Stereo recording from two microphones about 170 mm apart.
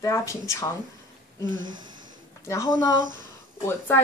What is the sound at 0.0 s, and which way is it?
Speech, 20° left (ahead or behind).